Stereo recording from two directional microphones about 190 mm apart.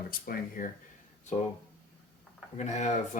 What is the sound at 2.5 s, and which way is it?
Speech, 35° left (ahead or behind).